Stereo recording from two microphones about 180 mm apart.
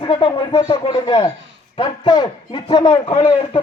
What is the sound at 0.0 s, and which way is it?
A man's voice, 30° left (ahead or behind).